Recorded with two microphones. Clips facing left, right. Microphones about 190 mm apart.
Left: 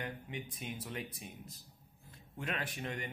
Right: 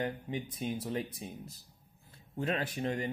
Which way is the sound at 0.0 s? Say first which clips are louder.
Right 7 dB; 35° right (ahead or behind).